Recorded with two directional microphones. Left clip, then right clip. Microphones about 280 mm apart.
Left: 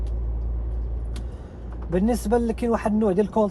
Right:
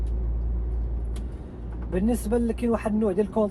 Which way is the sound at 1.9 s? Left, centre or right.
Left.